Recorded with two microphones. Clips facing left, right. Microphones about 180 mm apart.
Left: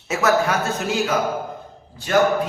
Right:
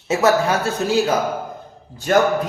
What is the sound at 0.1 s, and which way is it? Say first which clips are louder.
A man's voice: right 3 dB; 30° right (ahead or behind).